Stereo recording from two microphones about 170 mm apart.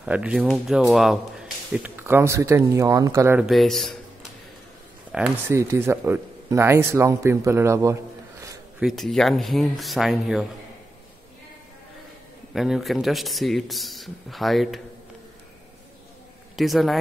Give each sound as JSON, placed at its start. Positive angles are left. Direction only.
{"t": 0.0, "sound": "a man's voice", "side_deg": -5}
{"t": 3.4, "sound": "speech", "side_deg": 0}
{"t": 5.5, "sound": "speech", "side_deg": -15}
{"t": 8.7, "sound": "speech", "side_deg": 0}
{"t": 12.5, "sound": "speech", "side_deg": 0}
{"t": 16.5, "sound": "speech", "side_deg": 0}